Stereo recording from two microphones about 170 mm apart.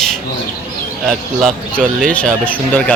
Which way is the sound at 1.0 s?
Centre (ahead or behind).